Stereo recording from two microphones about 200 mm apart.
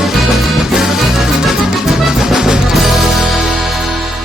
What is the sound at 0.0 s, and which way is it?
Music, centre (ahead or behind).